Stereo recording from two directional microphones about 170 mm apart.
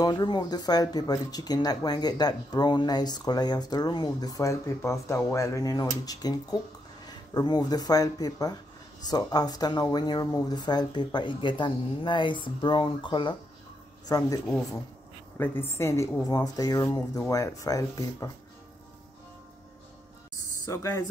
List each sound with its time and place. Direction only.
0.0 s speech: 25° left (ahead or behind)
20.6 s speech: 15° left (ahead or behind)